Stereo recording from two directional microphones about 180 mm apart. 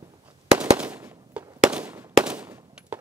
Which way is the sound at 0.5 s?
10° right (ahead or behind).